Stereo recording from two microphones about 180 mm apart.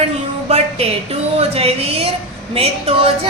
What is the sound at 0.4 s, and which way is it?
Music, 35° right (ahead or behind).